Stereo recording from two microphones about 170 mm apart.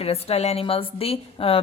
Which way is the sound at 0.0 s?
35° left (ahead or behind).